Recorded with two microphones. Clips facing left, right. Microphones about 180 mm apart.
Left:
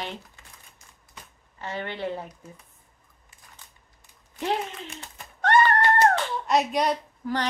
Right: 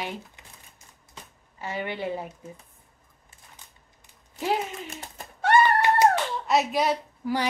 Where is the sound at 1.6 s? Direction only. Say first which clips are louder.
Right 1 dB; 10° right (ahead or behind).